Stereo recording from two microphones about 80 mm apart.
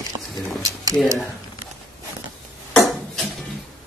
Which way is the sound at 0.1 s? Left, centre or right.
Right.